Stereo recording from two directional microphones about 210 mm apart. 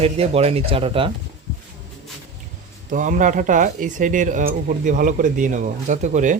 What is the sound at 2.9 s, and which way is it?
Speech, 35° right (ahead or behind).